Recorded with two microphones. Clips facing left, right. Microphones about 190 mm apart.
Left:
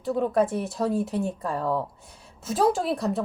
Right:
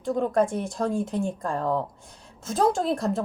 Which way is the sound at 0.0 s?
5° left (ahead or behind).